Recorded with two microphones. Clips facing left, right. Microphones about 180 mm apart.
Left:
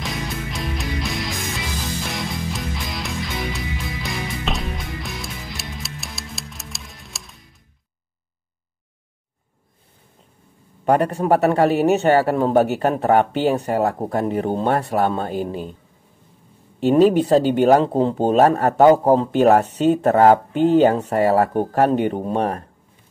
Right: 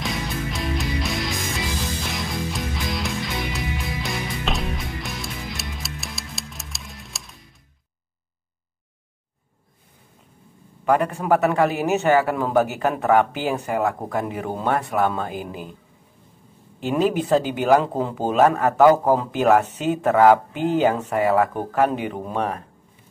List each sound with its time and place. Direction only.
0.0 s music: centre (ahead or behind)
10.9 s speech: 35° left (ahead or behind)
16.9 s speech: 35° left (ahead or behind)
20.5 s speech: 5° right (ahead or behind)
21.1 s speech: 35° left (ahead or behind)